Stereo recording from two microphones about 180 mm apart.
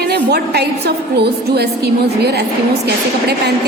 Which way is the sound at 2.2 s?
65° right (ahead or behind).